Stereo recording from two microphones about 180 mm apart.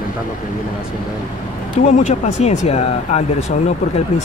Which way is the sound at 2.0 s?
40° left (ahead or behind).